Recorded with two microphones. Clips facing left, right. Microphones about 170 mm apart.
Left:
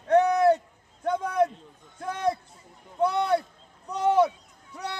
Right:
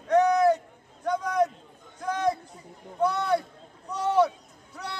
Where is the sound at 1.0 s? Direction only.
30° left (ahead or behind).